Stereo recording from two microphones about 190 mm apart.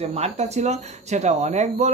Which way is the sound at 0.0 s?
35° right (ahead or behind).